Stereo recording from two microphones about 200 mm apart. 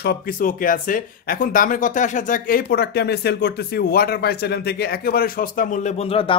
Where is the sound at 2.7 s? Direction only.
55° left (ahead or behind).